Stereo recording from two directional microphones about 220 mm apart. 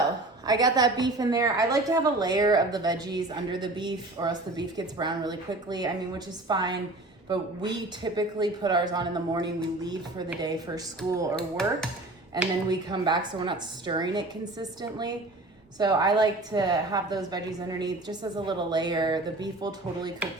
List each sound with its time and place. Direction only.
0.4 s a woman's voice: 20° right (ahead or behind)
12.6 s a woman's voice: 20° right (ahead or behind)